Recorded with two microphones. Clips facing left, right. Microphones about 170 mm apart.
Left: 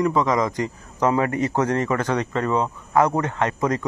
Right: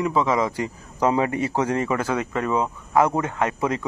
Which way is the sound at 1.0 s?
15° right (ahead or behind).